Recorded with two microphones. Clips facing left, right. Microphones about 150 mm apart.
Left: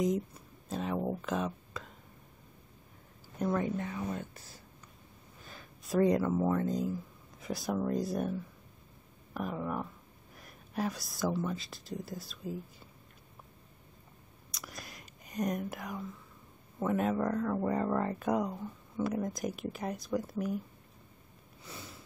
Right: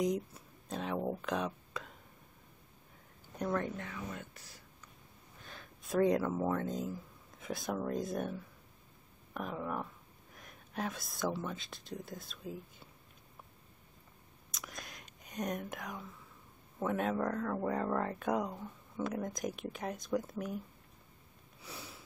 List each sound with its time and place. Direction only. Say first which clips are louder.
0.0 s a sound: left 2 dB; centre (ahead or behind)
3.3 s speech: left 3 dB; 5° left (ahead or behind)
3.9 s speech: left 6 dB; 35° left (ahead or behind)
5.4 s speech: left 1 dB; centre (ahead or behind)
14.5 s whispering: left 1 dB; centre (ahead or behind)
16.8 s speech: left 3 dB; centre (ahead or behind)
21.5 s sniff: left 1 dB; centre (ahead or behind)